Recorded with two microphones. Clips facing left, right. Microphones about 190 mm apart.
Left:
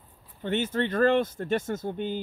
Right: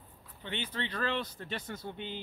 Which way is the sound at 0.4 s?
45° left (ahead or behind).